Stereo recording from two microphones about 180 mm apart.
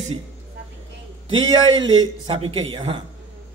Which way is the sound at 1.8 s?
25° right (ahead or behind).